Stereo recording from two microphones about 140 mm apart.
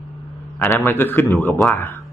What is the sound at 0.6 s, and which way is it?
A man's voice, 15° left (ahead or behind).